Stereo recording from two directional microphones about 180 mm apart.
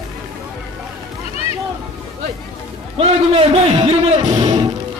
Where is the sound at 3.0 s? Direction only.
35° right (ahead or behind).